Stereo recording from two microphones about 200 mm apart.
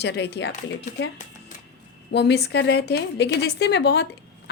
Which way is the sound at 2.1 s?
55° left (ahead or behind).